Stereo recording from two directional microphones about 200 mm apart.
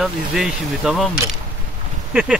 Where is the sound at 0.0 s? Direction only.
Centre (ahead or behind).